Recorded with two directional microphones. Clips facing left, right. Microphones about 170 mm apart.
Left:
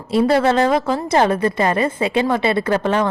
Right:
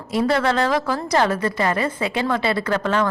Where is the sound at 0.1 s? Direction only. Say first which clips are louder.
Left 4 dB; 25° left (ahead or behind).